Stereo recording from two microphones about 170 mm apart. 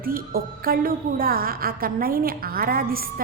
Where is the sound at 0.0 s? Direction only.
60° right (ahead or behind).